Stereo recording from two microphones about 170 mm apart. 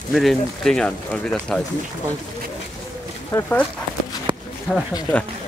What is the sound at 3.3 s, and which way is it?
Speech, 15° left (ahead or behind).